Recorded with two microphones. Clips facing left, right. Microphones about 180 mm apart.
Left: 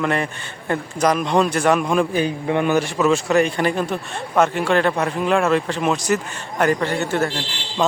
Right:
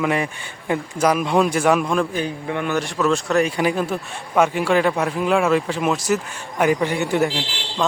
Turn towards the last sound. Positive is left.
turn(degrees=-15)  # may be behind; listen again after turning